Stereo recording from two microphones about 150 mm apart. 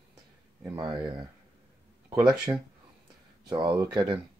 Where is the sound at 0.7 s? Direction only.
25° right (ahead or behind).